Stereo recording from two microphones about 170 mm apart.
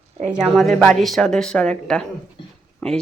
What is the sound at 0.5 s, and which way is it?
Speech, centre (ahead or behind).